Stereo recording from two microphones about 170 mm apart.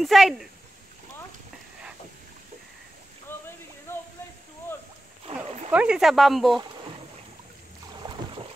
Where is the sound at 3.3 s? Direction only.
15° left (ahead or behind).